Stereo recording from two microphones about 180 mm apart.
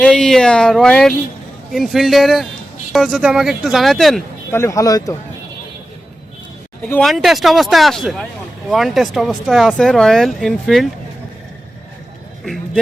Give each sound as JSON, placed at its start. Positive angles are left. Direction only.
{"t": 0.0, "sound": "speech", "side_deg": 5}
{"t": 4.5, "sound": "speech", "side_deg": 15}
{"t": 6.8, "sound": "speech", "side_deg": 5}